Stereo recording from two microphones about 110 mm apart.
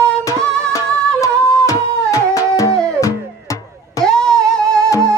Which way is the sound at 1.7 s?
30° left (ahead or behind).